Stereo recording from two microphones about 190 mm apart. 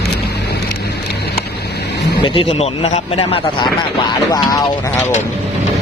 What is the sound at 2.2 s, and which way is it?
Speech, 25° left (ahead or behind).